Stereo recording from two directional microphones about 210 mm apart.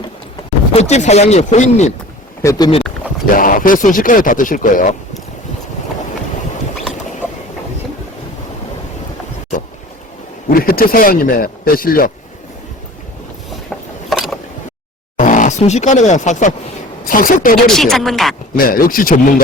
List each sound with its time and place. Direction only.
0.7 s speech: 30° left (ahead or behind)
2.4 s speech: 15° left (ahead or behind)
3.3 s speech: 40° left (ahead or behind)
10.5 s speech: 45° left (ahead or behind)
14.1 s mechanisms: centre (ahead or behind)
15.2 s speech: 35° left (ahead or behind)
17.7 s a woman's voice: centre (ahead or behind)
18.5 s speech: 45° left (ahead or behind)